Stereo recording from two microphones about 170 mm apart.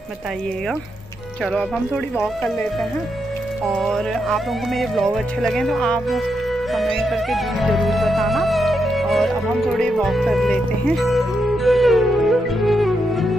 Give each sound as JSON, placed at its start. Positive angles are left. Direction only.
{"t": 1.4, "sound": "speech", "side_deg": 5}
{"t": 3.6, "sound": "speech", "side_deg": 0}
{"t": 7.0, "sound": "music", "side_deg": 0}